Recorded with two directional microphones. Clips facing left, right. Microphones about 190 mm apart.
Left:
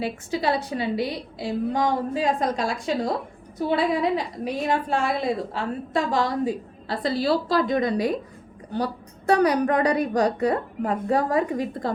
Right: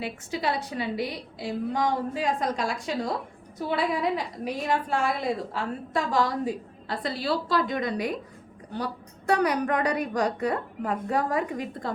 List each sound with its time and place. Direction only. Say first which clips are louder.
0.0 s a woman's voice: left 4 dB; 35° left (ahead or behind)
9.3 s a woman's voice: left 4 dB; 35° left (ahead or behind)